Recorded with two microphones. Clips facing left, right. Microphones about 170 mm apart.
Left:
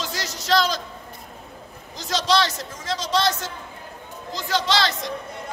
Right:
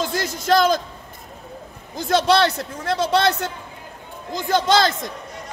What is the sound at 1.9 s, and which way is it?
A man's voice, 55° right (ahead or behind).